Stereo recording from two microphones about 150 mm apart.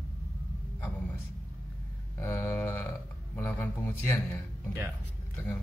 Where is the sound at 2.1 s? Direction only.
15° left (ahead or behind).